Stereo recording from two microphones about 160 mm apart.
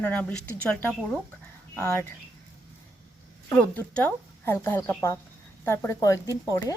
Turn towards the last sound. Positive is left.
turn(degrees=20)  # may be behind; listen again after turning